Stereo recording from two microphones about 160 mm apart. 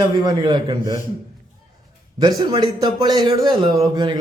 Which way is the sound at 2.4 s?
30° right (ahead or behind).